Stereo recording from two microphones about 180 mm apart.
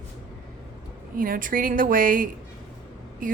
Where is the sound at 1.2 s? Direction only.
50° right (ahead or behind).